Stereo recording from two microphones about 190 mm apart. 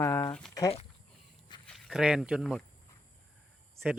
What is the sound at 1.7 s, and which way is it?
Speech, centre (ahead or behind).